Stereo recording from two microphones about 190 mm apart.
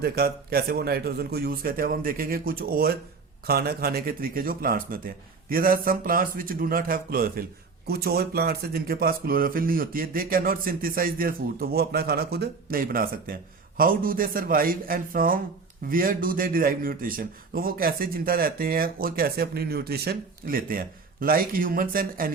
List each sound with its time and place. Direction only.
0.0 s speech: 55° right (ahead or behind)